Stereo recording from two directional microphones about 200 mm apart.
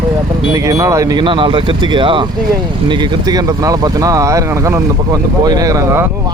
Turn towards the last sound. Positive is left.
turn(degrees=-15)  # may be behind; listen again after turning